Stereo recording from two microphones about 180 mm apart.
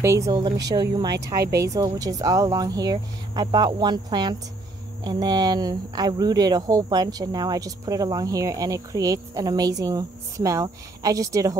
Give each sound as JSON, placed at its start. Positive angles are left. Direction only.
{"t": 0.0, "sound": "speech", "side_deg": -15}
{"t": 1.1, "sound": "speech", "side_deg": -65}
{"t": 1.6, "sound": "speech", "side_deg": -20}